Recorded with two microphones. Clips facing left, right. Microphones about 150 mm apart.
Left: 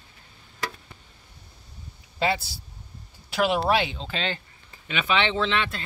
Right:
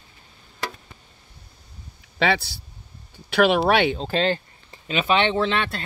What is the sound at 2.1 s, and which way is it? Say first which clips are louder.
Speech: right 3 dB; 85° right.